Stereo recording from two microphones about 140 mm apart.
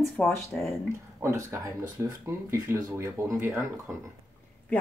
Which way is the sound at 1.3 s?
20° right (ahead or behind).